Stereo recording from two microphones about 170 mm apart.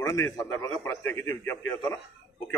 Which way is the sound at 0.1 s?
20° left (ahead or behind).